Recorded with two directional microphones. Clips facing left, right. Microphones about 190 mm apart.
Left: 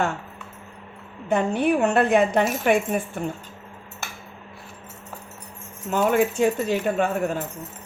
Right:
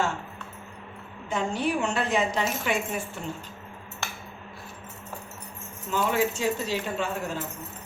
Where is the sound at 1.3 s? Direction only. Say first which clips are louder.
Left 6 dB; 60° left (ahead or behind).